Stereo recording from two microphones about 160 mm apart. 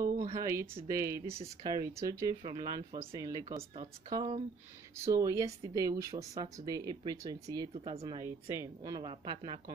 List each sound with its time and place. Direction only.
0.3 s speech: 20° right (ahead or behind)
3.4 s speech: 40° right (ahead or behind)
4.9 s speech: 20° right (ahead or behind)